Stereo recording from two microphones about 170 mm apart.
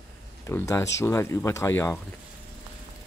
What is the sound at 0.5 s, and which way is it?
Speech, 15° left (ahead or behind).